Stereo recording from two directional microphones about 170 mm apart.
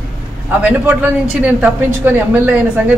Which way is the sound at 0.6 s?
10° right (ahead or behind).